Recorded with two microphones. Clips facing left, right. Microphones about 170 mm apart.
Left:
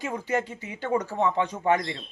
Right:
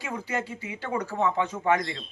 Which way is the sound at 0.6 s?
40° left (ahead or behind).